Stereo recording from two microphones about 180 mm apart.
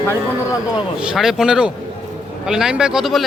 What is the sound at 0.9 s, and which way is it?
A man's voice, 5° right (ahead or behind).